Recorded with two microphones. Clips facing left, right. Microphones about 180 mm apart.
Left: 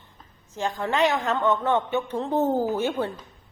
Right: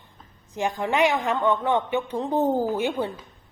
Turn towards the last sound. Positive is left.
turn(degrees=-15)  # may be behind; listen again after turning